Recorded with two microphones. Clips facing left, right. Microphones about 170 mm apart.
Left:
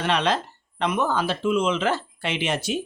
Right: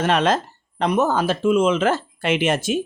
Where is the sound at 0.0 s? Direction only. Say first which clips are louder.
Right 4 dB; 45° right (ahead or behind).